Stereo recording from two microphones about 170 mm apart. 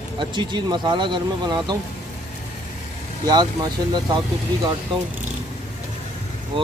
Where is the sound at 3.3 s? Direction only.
25° right (ahead or behind).